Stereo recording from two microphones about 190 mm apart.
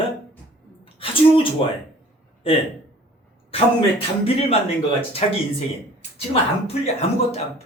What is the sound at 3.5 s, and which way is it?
A man's voice, 30° left (ahead or behind).